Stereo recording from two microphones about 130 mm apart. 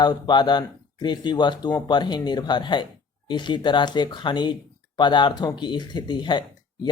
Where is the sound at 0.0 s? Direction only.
35° left (ahead or behind).